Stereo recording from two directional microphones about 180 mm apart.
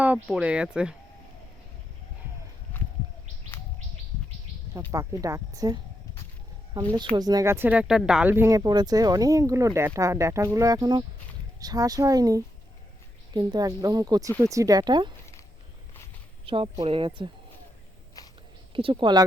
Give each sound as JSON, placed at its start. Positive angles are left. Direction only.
{"t": 0.0, "sound": "speech", "side_deg": -5}
{"t": 4.9, "sound": "speech", "side_deg": -15}
{"t": 7.2, "sound": "speech", "side_deg": -20}
{"t": 16.5, "sound": "speech", "side_deg": -30}
{"t": 18.7, "sound": "speech", "side_deg": -30}